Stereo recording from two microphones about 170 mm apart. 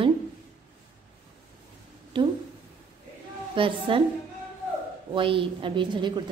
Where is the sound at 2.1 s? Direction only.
30° right (ahead or behind).